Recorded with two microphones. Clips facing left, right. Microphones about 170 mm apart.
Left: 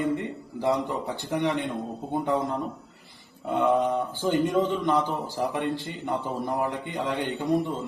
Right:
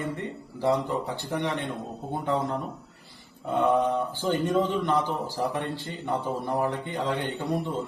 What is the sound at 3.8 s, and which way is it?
A man's voice, 20° left (ahead or behind).